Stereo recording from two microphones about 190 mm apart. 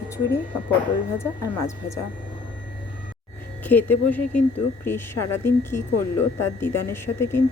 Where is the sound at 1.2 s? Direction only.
15° left (ahead or behind).